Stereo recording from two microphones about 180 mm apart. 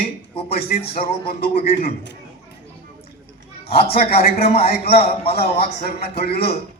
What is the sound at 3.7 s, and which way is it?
Speech, 60° left (ahead or behind).